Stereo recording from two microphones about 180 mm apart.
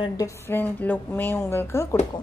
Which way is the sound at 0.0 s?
20° left (ahead or behind).